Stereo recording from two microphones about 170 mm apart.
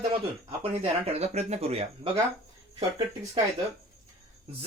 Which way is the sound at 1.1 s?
40° right (ahead or behind).